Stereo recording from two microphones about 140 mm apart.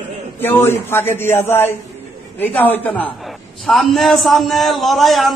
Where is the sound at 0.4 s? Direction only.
15° left (ahead or behind).